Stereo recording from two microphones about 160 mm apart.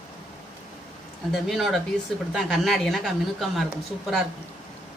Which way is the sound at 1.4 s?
Centre (ahead or behind).